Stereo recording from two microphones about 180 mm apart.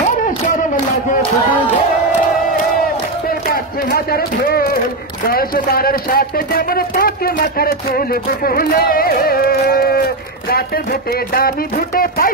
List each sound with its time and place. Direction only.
3.4 s speech: 55° left (ahead or behind)